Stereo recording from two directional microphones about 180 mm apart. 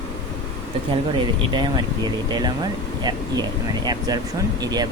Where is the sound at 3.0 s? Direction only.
20° right (ahead or behind).